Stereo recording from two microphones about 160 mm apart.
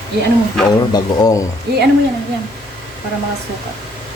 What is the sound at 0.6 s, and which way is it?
Speech, 25° left (ahead or behind).